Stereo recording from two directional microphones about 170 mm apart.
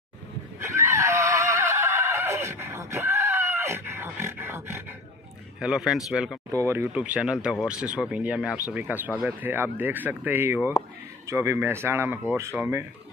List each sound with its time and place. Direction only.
0.6 s neigh: 15° right (ahead or behind)
5.6 s speech: 5° right (ahead or behind)
6.5 s speech: 15° right (ahead or behind)